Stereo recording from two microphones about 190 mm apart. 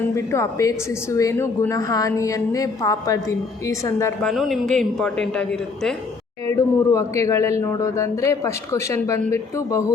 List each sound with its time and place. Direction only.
0.1 s a woman's voice: 15° left (ahead or behind)
4.3 s a man's voice: centre (ahead or behind)
6.5 s a woman's voice: 15° left (ahead or behind)